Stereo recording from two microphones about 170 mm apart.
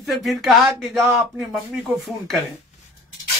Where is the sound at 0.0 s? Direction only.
Centre (ahead or behind).